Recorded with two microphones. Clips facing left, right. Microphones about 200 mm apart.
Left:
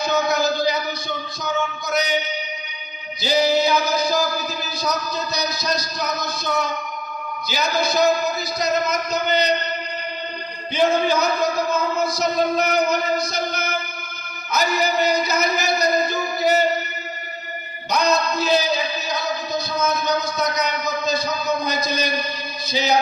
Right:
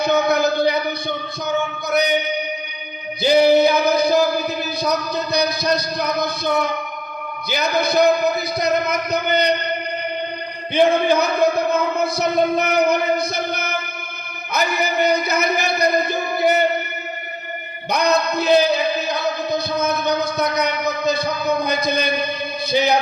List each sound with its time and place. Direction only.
0.0 s music: 60° right (ahead or behind)
10.8 s music: 60° right (ahead or behind)
17.9 s speech: 60° right (ahead or behind)
22.7 s music: 60° right (ahead or behind)